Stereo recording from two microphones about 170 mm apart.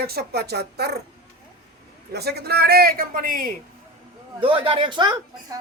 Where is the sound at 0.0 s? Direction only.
65° right (ahead or behind).